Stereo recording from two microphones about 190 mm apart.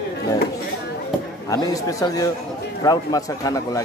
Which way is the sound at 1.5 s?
15° left (ahead or behind).